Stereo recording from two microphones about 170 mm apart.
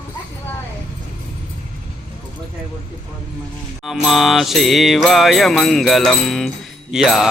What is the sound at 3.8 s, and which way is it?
Music, centre (ahead or behind).